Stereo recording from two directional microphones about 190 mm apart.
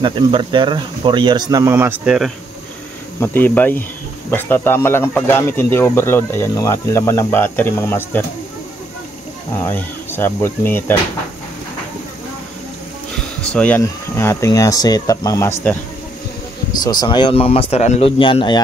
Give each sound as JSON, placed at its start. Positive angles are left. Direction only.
{"t": 0.0, "sound": "speech", "side_deg": -25}
{"t": 3.2, "sound": "speech", "side_deg": 10}
{"t": 9.7, "sound": "speech", "side_deg": 10}
{"t": 13.4, "sound": "speech", "side_deg": 5}
{"t": 16.8, "sound": "speech", "side_deg": 20}